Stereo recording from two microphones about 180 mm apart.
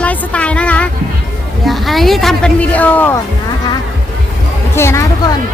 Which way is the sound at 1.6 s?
Centre (ahead or behind).